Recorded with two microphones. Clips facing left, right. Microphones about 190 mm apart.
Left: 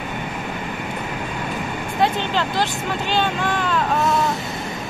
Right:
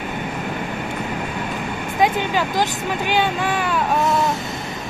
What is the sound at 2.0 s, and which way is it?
Speech, 10° right (ahead or behind).